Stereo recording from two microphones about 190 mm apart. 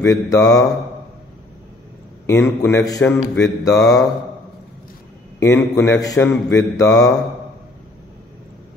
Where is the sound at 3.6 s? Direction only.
20° left (ahead or behind).